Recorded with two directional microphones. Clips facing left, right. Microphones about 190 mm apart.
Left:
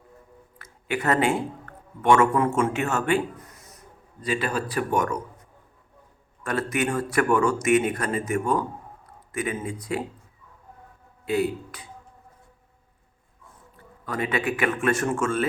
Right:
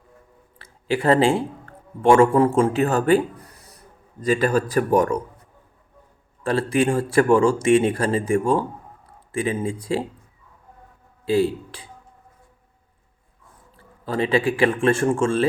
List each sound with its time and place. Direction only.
0.6 s a man's voice: 30° right (ahead or behind)
6.4 s speech: 30° right (ahead or behind)
11.3 s speech: 30° right (ahead or behind)
13.7 s speech: 30° right (ahead or behind)